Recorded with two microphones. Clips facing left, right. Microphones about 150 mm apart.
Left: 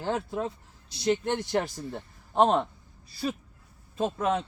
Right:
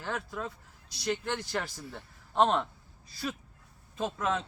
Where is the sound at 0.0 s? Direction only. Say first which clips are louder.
Left 6 dB; 30° left (ahead or behind).